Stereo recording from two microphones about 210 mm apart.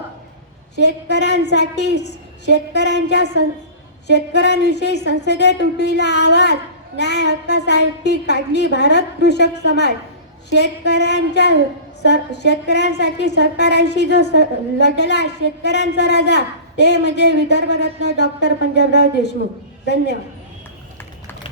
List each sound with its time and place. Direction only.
0.8 s speech: 55° left (ahead or behind)